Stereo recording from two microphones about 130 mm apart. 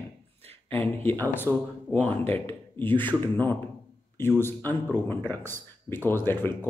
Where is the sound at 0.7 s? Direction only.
15° left (ahead or behind).